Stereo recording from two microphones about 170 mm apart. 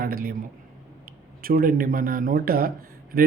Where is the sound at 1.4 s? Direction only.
60° right (ahead or behind).